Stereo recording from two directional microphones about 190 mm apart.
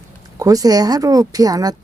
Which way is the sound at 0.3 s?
20° right (ahead or behind).